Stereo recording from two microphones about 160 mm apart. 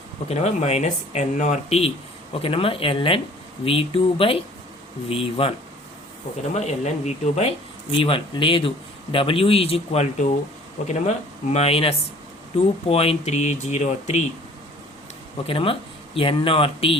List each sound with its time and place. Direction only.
0.3 s speech: 45° left (ahead or behind)
7.9 s speech: 35° left (ahead or behind)
15.4 s speech: 35° left (ahead or behind)